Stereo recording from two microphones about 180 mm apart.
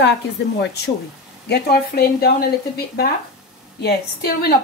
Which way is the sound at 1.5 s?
60° left (ahead or behind).